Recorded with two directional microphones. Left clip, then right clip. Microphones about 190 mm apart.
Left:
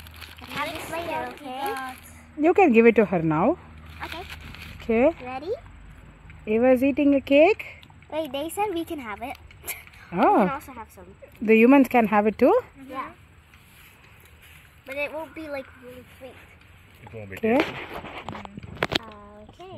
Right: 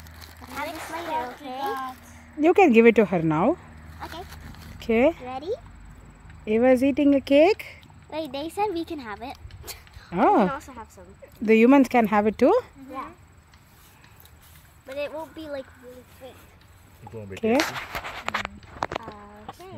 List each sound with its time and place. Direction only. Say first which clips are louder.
0.0 s a sound: left 3 dB; 10° left (ahead or behind)
0.7 s speech: left 1 dB; centre (ahead or behind)
4.1 s a sound: left 3 dB; 10° right (ahead or behind)
5.1 s speech: even; centre (ahead or behind)
8.1 s speech: left 2 dB; 15° left (ahead or behind)
10.1 s speech: even; 5° right (ahead or behind)
10.5 s speech: left 1 dB; 25° left (ahead or behind)
11.4 s speech: left 1 dB; centre (ahead or behind)
14.9 s speech: left 1 dB; 25° left (ahead or behind)
17.3 s speech: even; centre (ahead or behind)